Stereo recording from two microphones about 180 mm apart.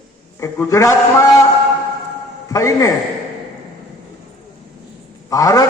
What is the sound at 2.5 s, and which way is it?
Speech, 20° left (ahead or behind).